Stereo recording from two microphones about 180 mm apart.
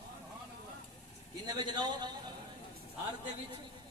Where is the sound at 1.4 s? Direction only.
25° right (ahead or behind).